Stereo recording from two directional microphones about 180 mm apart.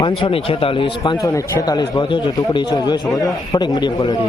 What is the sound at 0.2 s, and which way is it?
Speech, 30° left (ahead or behind).